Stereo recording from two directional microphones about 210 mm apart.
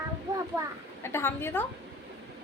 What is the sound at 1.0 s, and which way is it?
Speech, 10° left (ahead or behind).